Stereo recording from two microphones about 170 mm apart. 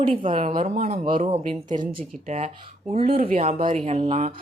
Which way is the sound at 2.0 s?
45° right (ahead or behind).